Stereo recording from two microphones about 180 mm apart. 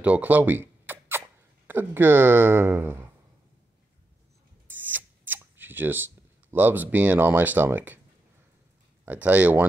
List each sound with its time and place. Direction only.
0.0 s a sound: 10° right (ahead or behind)
1.7 s speech: 10° right (ahead or behind)
4.6 s shuffling cards: 10° right (ahead or behind)
6.5 s speech: 10° right (ahead or behind)
9.0 s speech: 10° right (ahead or behind)